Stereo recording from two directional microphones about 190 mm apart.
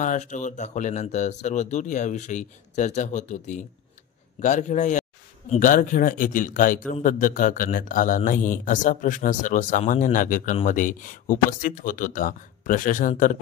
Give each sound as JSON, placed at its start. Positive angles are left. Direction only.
{"t": 0.0, "sound": "a man's voice", "side_deg": 40}